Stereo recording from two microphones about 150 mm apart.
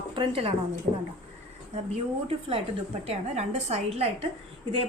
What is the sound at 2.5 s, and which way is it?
A woman's voice, 40° right (ahead or behind).